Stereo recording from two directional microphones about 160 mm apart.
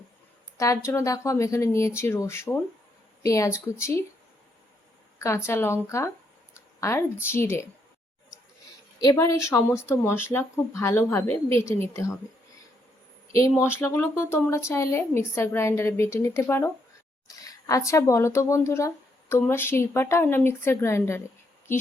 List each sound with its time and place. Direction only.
0.5 s a woman's voice: 20° left (ahead or behind)
5.2 s speech: 15° left (ahead or behind)
9.0 s speech: 20° left (ahead or behind)
13.3 s speech: 20° left (ahead or behind)